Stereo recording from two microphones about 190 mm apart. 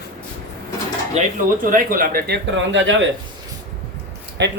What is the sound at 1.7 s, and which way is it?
Speech, 45° right (ahead or behind).